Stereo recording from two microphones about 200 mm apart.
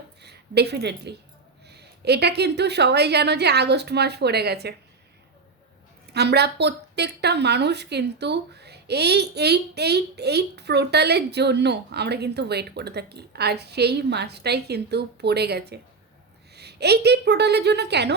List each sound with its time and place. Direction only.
0.2 s a woman's voice: 55° right (ahead or behind)
6.1 s speech: 55° right (ahead or behind)